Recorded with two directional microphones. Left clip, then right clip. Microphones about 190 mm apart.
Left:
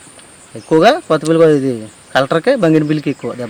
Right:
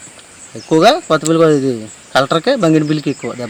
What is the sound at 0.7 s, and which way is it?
A man's voice, 5° left (ahead or behind).